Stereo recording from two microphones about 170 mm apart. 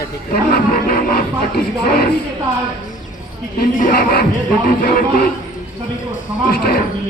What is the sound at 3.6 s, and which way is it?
Speech, 60° left (ahead or behind).